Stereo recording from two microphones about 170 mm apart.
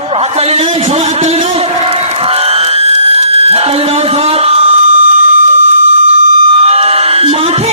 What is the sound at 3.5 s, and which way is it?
Music, 35° right (ahead or behind).